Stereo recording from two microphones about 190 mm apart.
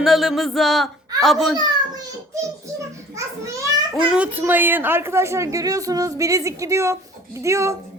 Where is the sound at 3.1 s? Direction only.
15° right (ahead or behind).